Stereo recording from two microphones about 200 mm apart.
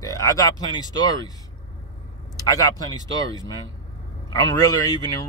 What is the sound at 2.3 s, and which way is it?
Speech, 15° left (ahead or behind).